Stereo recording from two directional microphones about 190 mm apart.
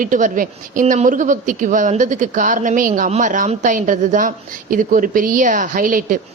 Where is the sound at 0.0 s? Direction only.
45° right (ahead or behind).